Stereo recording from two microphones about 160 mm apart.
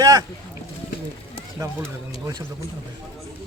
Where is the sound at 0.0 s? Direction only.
25° right (ahead or behind).